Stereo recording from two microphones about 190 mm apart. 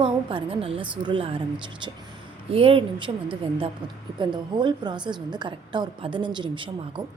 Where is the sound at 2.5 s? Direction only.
30° right (ahead or behind).